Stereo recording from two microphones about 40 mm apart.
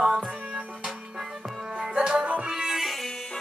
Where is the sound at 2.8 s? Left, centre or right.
Centre.